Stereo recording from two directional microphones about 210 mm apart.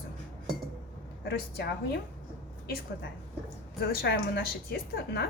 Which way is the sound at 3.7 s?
45° left (ahead or behind).